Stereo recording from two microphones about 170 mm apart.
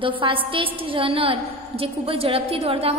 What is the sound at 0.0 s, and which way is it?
A woman's voice, 30° right (ahead or behind).